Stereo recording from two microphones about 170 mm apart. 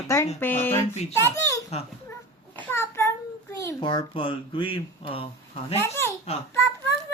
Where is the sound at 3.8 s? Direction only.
30° left (ahead or behind).